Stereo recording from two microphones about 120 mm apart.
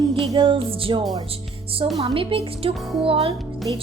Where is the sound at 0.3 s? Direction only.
45° right (ahead or behind).